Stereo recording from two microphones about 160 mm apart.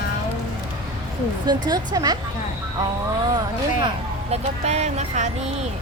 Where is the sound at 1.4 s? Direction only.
25° right (ahead or behind).